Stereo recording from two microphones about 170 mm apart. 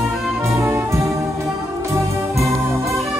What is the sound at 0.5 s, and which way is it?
Music, 15° right (ahead or behind).